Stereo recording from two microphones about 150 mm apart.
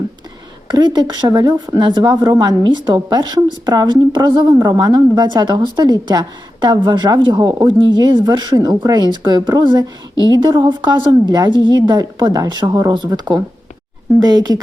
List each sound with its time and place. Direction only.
0.9 s a woman's voice: 25° right (ahead or behind)